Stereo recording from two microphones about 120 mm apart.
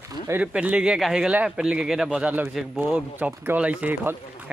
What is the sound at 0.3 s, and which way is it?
Speech, 10° right (ahead or behind).